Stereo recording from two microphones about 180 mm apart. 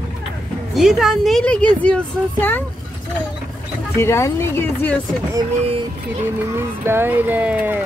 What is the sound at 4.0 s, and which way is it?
Speech, 15° left (ahead or behind).